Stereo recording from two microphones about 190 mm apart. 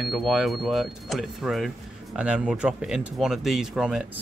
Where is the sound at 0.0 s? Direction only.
Centre (ahead or behind).